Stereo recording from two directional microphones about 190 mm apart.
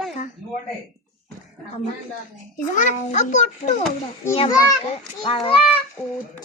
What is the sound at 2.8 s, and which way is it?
Speech, 40° left (ahead or behind).